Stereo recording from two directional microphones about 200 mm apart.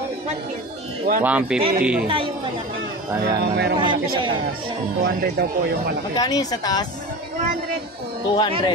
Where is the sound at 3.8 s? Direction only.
25° right (ahead or behind).